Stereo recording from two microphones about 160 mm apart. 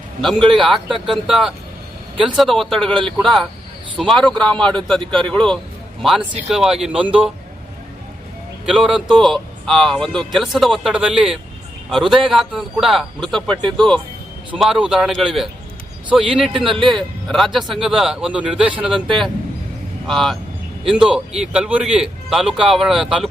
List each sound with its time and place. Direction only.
0.2 s a man's voice: centre (ahead or behind)
8.6 s a man's voice: centre (ahead or behind)
18.9 s speech: 30° right (ahead or behind)
20.1 s a man's voice: centre (ahead or behind)